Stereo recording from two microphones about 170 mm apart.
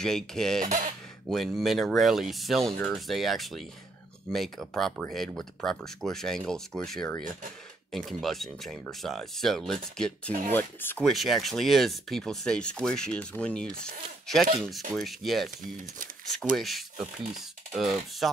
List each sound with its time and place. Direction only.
0.0 s speech: 5° left (ahead or behind)
0.6 s speech: 50° right (ahead or behind)
1.3 s speech: centre (ahead or behind)
11.1 s speech: centre (ahead or behind)
15.0 s speech: centre (ahead or behind)
16.5 s speech: centre (ahead or behind)